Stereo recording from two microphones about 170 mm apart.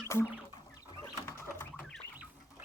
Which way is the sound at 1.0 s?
15° left (ahead or behind).